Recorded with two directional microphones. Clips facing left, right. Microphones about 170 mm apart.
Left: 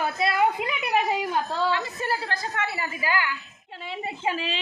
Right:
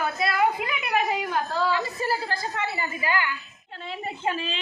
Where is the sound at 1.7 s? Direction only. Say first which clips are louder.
Right 1 dB; 5° right (ahead or behind).